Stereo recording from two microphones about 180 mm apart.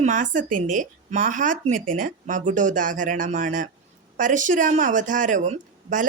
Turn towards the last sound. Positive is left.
turn(degrees=-45)  # may be behind; listen again after turning